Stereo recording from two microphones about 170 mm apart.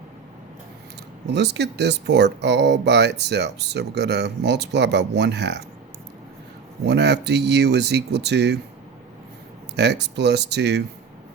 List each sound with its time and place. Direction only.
1.3 s speech: 85° right
6.8 s speech: 90° right
9.7 s speech: 85° right